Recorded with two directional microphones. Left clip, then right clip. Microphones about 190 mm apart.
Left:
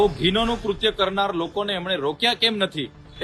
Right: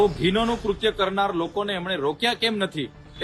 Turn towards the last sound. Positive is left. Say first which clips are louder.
# left 1 dB
turn(degrees=-5)  # may be behind; listen again after turning